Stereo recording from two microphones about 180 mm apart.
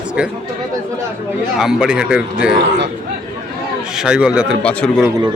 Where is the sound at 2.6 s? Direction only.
75° right (ahead or behind).